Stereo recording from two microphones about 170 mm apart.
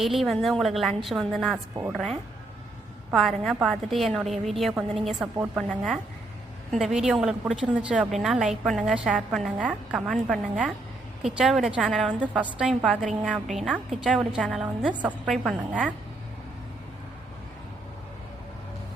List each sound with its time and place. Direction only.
0.0 s a woman's voice: centre (ahead or behind)